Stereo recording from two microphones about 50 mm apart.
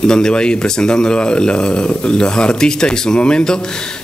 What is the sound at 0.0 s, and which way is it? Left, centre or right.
Speech, centre.